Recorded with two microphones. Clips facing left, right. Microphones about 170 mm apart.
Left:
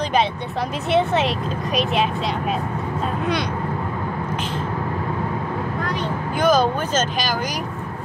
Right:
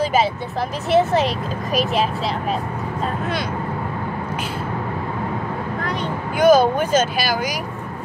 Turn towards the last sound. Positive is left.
turn(degrees=-10)  # may be behind; listen again after turning